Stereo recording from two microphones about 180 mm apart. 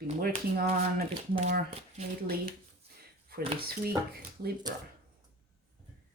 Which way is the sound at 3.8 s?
60° right (ahead or behind).